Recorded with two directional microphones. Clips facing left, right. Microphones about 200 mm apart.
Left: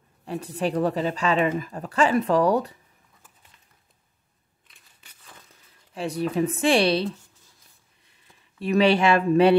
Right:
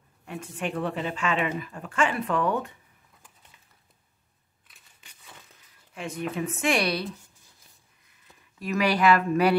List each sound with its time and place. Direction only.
0.2 s a woman's voice: 35° left (ahead or behind)
4.6 s a sound: 5° right (ahead or behind)
5.9 s a woman's voice: 35° left (ahead or behind)
8.5 s speech: 30° left (ahead or behind)